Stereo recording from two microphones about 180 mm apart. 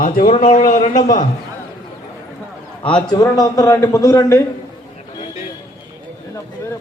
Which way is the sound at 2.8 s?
25° left (ahead or behind).